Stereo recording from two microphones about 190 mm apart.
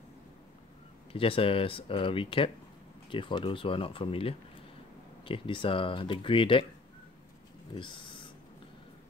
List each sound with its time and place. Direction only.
1.1 s speech: 30° left (ahead or behind)
7.7 s speech: 25° left (ahead or behind)